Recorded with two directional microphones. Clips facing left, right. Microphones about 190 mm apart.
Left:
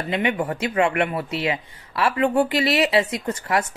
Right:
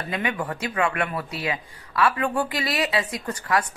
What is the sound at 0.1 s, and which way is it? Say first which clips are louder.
Speech: left 5 dB; 25° left (ahead or behind).